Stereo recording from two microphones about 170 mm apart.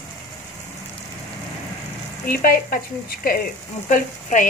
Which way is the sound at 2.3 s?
60° left (ahead or behind).